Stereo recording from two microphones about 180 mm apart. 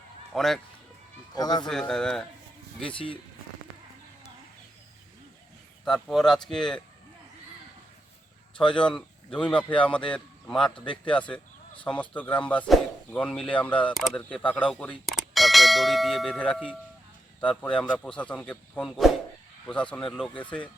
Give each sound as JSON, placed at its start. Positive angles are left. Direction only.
{"t": 0.3, "sound": "speech", "side_deg": 0}
{"t": 1.4, "sound": "speech", "side_deg": 20}
{"t": 1.6, "sound": "speech", "side_deg": 5}
{"t": 5.8, "sound": "speech", "side_deg": 0}
{"t": 8.6, "sound": "speech", "side_deg": 25}
{"t": 8.9, "sound": "a man's voice", "side_deg": 5}